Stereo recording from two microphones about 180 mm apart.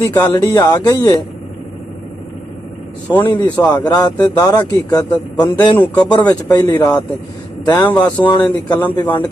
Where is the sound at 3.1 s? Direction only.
20° left (ahead or behind).